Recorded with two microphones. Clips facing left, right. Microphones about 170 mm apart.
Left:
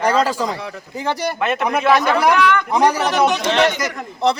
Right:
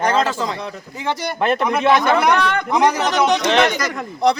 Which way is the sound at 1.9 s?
35° left (ahead or behind).